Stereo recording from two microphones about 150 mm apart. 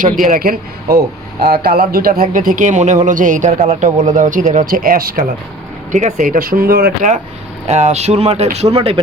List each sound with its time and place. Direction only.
0.0 s speech: 65° right (ahead or behind)
5.9 s speech: 55° right (ahead or behind); by 7.1 s 85° right
7.7 s speech: 50° right (ahead or behind)